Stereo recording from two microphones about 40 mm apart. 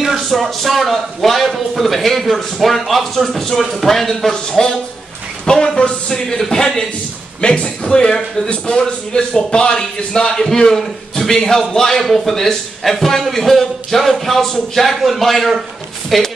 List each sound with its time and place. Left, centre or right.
0.3 s a man's voice: centre